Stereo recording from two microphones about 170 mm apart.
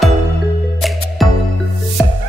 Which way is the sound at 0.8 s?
Centre (ahead or behind).